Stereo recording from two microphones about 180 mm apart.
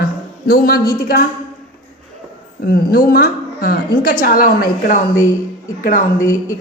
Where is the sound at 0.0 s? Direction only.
55° left (ahead or behind).